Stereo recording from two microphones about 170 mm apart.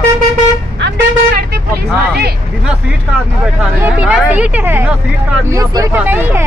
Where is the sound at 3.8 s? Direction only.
5° right (ahead or behind).